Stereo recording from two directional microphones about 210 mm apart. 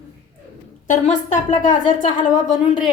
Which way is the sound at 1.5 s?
25° left (ahead or behind).